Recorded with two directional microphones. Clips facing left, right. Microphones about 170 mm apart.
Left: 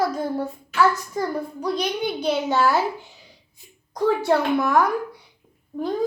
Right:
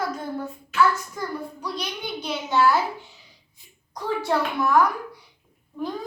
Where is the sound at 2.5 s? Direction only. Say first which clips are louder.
Right 2 dB; 40° left (ahead or behind).